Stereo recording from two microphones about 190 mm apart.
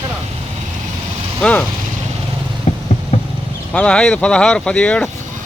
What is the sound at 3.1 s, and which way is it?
Vehicle, 35° left (ahead or behind).